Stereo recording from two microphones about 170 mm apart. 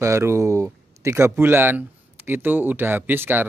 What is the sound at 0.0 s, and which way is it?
Speech, 15° right (ahead or behind).